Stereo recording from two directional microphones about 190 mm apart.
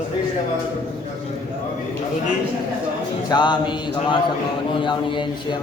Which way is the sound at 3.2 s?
25° left (ahead or behind).